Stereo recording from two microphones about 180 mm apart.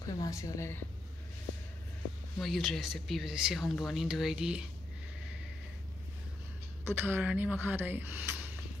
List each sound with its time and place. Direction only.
0.0 s a woman's voice: 20° left (ahead or behind)
2.4 s speech: centre (ahead or behind)
7.0 s speech: 10° right (ahead or behind)